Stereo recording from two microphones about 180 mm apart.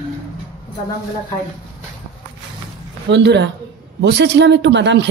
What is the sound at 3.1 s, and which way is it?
Speech, 75° right (ahead or behind).